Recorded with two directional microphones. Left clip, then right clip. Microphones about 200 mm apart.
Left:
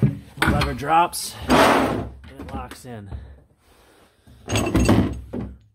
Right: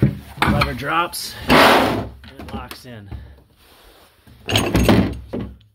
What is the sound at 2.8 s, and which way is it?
Speech, 25° left (ahead or behind).